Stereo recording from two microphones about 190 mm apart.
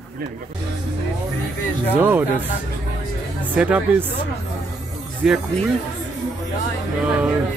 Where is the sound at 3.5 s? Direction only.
5° right (ahead or behind).